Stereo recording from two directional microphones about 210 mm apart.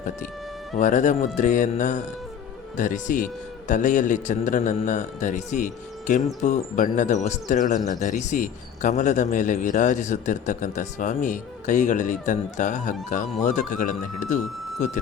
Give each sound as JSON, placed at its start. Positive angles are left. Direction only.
{"t": 0.8, "sound": "a man's voice", "side_deg": 35}